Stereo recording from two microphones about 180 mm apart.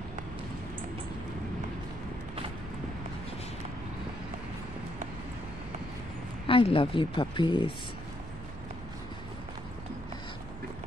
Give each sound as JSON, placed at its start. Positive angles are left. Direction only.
{"t": 6.4, "sound": "speech", "side_deg": 30}